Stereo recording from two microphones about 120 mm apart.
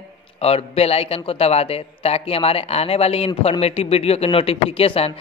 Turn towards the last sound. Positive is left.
turn(degrees=50)  # may be behind; listen again after turning